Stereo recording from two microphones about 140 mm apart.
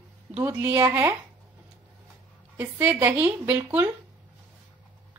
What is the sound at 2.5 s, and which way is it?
Speech, 15° right (ahead or behind).